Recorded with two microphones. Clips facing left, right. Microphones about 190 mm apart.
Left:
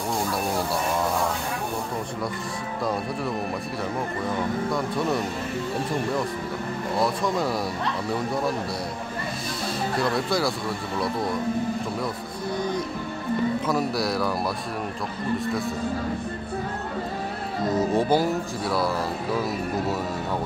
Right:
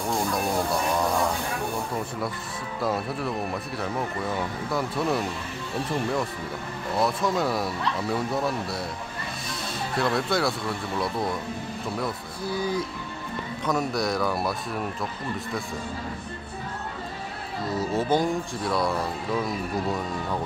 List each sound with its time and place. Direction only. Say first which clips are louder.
4.7 s speech: right 3 dB; centre (ahead or behind)
7.0 s speech: even; centre (ahead or behind)
9.9 s speech: right 1 dB; centre (ahead or behind)
12.0 s music: left 1 dB; 5° right (ahead or behind)
13.7 s speech: left 1 dB; centre (ahead or behind)
17.6 s speech: left 4 dB; 20° left (ahead or behind)
18.1 s speech: left 2 dB; 5° left (ahead or behind)